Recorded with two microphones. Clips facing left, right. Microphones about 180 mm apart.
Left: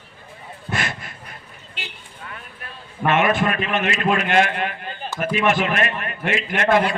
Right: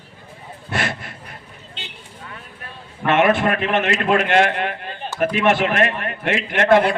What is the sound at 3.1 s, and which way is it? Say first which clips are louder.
A man's voice: right 2 dB; 65° right (ahead or behind).